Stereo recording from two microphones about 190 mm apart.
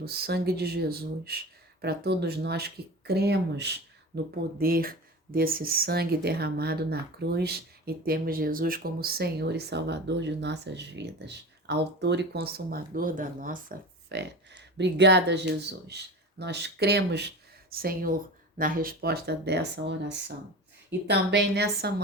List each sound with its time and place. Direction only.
0.0 s speech: 55° right (ahead or behind)
14.1 s speech: 65° right (ahead or behind)